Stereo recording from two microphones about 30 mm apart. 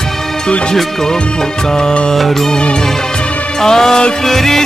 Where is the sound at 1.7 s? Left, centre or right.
Left.